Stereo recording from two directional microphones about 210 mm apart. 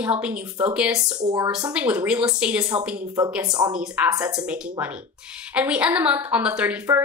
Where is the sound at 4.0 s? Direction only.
5° right (ahead or behind).